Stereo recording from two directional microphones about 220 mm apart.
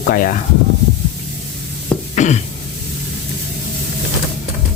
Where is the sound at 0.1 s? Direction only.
40° left (ahead or behind).